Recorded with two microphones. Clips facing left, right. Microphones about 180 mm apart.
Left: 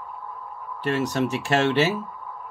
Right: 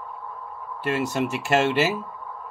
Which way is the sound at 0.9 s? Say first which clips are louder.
Left 1 dB; 10° right (ahead or behind).